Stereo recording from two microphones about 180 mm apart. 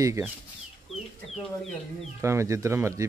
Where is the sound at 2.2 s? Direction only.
15° right (ahead or behind).